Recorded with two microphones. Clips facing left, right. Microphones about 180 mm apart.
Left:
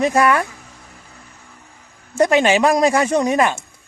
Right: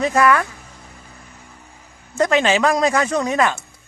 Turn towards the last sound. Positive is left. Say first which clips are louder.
# left 2 dB
turn(degrees=15)  # may be behind; listen again after turning